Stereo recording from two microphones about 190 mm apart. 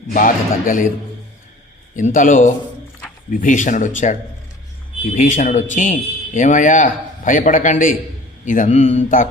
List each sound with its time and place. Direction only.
0.1 s a man's voice: 45° left (ahead or behind)
2.0 s a man's voice: 45° left (ahead or behind)